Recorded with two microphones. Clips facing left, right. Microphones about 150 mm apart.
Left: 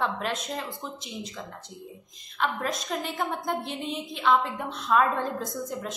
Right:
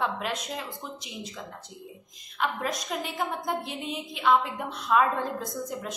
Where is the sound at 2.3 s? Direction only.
5° right (ahead or behind).